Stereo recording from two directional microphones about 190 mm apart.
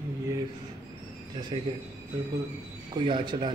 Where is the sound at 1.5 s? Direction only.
25° right (ahead or behind).